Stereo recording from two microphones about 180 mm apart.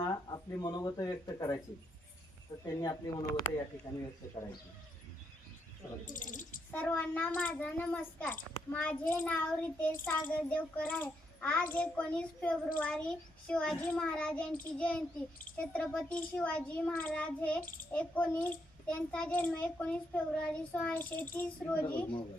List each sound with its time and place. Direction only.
0.0 s speech: 20° left (ahead or behind)
6.1 s speech: 45° left (ahead or behind)
6.7 s a child's voice: 10° left (ahead or behind)